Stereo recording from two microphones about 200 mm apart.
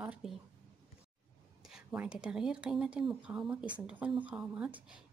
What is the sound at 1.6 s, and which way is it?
Speech, 5° right (ahead or behind).